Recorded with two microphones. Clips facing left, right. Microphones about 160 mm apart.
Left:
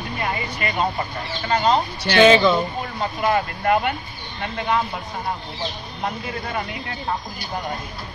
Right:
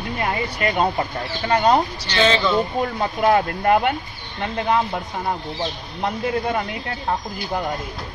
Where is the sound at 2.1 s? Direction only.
10° left (ahead or behind).